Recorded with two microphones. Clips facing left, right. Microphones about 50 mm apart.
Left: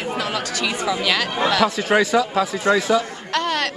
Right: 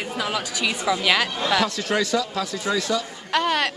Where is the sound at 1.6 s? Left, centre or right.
Centre.